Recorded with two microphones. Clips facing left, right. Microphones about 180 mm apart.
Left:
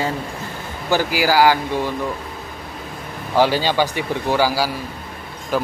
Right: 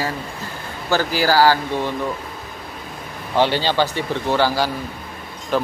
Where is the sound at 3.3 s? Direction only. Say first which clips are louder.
Left 1 dB; 10° left (ahead or behind).